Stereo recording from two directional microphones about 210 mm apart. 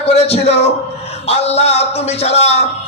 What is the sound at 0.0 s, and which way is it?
A man's voice, 30° left (ahead or behind).